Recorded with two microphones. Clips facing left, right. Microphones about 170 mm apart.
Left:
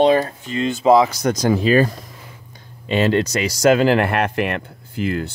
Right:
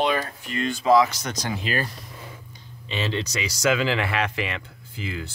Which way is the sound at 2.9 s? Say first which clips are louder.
Left 11 dB; 50° left (ahead or behind).